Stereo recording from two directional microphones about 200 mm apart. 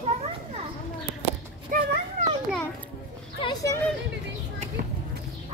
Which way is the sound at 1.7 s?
45° right (ahead or behind).